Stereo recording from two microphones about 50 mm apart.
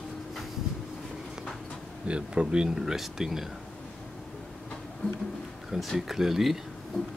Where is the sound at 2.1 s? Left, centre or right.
Right.